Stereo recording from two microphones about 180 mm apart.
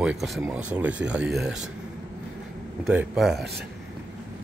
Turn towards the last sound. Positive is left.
turn(degrees=0)  # may be behind; listen again after turning